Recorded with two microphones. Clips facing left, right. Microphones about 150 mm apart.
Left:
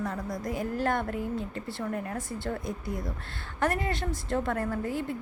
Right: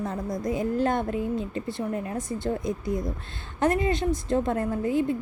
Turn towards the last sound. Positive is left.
turn(degrees=-20)  # may be behind; listen again after turning